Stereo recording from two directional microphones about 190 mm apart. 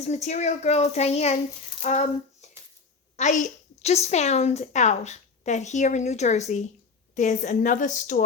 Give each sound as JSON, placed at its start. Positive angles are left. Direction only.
{"t": 0.0, "sound": "a woman's voice", "side_deg": 35}